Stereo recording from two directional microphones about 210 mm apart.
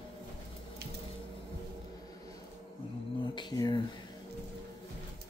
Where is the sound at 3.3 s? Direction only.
20° left (ahead or behind).